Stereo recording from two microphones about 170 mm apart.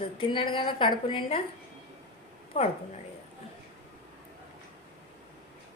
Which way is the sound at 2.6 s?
40° left (ahead or behind).